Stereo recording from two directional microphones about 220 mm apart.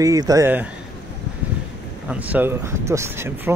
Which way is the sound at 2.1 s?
5° right (ahead or behind).